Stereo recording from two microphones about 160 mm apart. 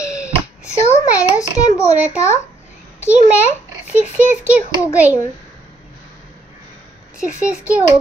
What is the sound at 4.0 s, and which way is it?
A child's voice, 10° right (ahead or behind).